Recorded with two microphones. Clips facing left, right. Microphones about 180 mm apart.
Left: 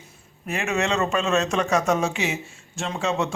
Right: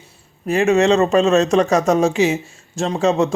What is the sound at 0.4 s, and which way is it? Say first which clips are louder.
Speech: right 11 dB; 35° right (ahead or behind).